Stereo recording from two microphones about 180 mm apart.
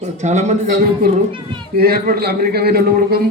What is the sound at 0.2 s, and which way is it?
Speech, 40° right (ahead or behind).